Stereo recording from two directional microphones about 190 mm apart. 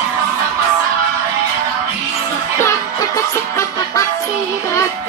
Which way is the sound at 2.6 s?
15° left (ahead or behind).